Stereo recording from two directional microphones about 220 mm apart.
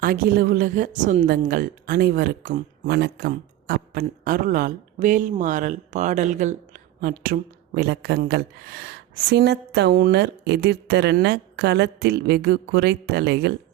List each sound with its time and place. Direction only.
0.0 s a woman's voice: 45° right (ahead or behind)
2.8 s a man's voice: 50° right (ahead or behind)